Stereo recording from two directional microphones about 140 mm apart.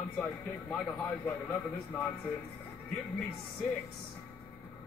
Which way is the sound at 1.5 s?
10° left (ahead or behind).